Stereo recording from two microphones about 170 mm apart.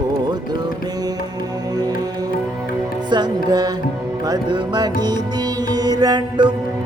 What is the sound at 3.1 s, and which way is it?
Music, 25° right (ahead or behind).